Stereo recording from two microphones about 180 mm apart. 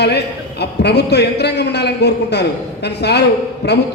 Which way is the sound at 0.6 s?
65° left (ahead or behind).